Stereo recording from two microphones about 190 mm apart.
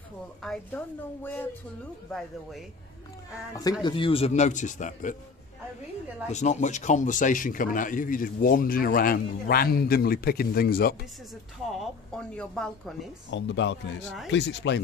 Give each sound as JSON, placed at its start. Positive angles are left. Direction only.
{"t": 0.4, "sound": "a woman's voice", "side_deg": 5}
{"t": 3.8, "sound": "speech", "side_deg": 25}
{"t": 6.2, "sound": "speech", "side_deg": 35}
{"t": 11.7, "sound": "a woman's voice", "side_deg": 0}
{"t": 13.3, "sound": "speech", "side_deg": 70}